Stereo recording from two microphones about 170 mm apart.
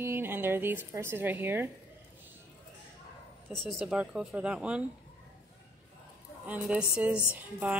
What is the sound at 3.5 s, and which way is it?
Speech, centre (ahead or behind).